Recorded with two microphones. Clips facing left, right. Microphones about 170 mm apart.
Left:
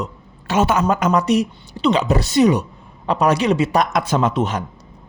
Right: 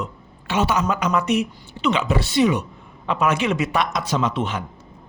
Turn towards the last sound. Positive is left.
turn(degrees=40)  # may be behind; listen again after turning